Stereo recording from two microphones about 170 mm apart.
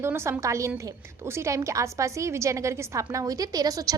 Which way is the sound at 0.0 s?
15° right (ahead or behind).